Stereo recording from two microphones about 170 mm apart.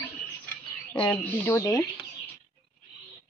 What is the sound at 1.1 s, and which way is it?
Speech, 10° left (ahead or behind).